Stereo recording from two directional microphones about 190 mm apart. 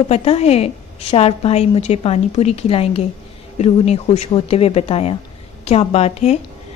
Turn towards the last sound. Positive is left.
turn(degrees=35)  # may be behind; listen again after turning